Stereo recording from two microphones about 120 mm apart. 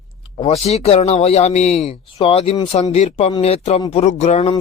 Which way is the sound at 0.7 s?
60° left (ahead or behind).